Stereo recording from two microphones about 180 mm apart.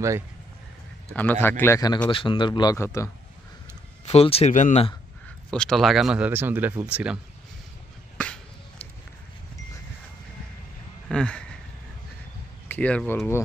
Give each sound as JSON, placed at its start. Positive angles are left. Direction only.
{"t": 1.1, "sound": "speech", "side_deg": 10}
{"t": 2.0, "sound": "a man's voice", "side_deg": 30}
{"t": 4.0, "sound": "speech", "side_deg": 35}
{"t": 5.5, "sound": "speech", "side_deg": 5}
{"t": 11.1, "sound": "speech", "side_deg": 5}
{"t": 12.6, "sound": "speech", "side_deg": 10}